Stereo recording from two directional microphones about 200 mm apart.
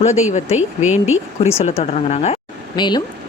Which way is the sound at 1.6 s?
35° left (ahead or behind).